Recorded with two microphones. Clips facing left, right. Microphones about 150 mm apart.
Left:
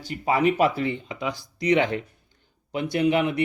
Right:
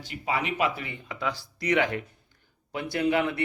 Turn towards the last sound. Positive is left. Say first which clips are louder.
# left 3 dB
turn(degrees=20)  # may be behind; listen again after turning